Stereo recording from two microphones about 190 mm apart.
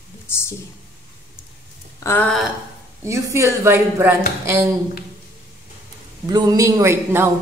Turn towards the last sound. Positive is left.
turn(degrees=-10)  # may be behind; listen again after turning